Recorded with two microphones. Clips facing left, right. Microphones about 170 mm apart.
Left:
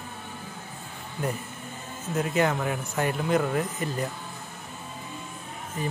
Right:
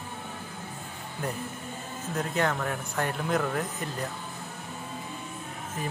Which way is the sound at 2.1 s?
5° left (ahead or behind).